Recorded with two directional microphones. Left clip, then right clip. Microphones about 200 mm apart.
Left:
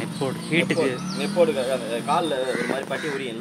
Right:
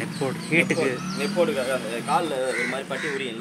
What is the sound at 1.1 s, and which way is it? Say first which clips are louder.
Speech: left 4 dB; 45° left (ahead or behind).